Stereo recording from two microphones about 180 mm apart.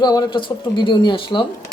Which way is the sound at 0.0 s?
25° left (ahead or behind).